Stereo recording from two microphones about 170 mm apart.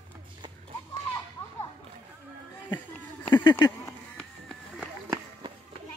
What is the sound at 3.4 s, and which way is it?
Speech, 25° left (ahead or behind).